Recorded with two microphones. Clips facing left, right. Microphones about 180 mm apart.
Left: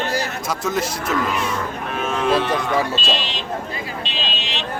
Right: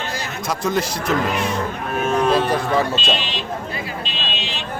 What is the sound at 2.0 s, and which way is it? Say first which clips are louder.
Cattle: right 2 dB; 45° right (ahead or behind).